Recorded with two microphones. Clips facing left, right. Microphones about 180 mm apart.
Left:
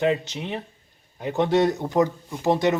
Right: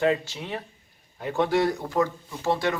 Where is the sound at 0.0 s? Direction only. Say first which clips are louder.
Left 1 dB; 20° left (ahead or behind).